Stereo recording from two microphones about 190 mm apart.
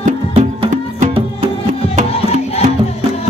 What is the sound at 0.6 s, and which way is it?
Music, 35° right (ahead or behind).